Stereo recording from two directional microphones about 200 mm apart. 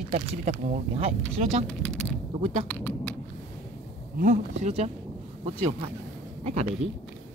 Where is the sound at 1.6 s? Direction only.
5° left (ahead or behind).